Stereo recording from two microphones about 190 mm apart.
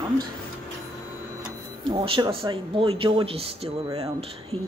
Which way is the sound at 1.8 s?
30° right (ahead or behind).